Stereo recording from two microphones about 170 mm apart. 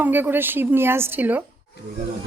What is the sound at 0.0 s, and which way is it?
A woman's voice, 10° right (ahead or behind).